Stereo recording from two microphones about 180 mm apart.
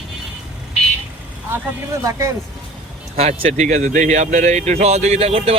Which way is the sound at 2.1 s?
15° right (ahead or behind).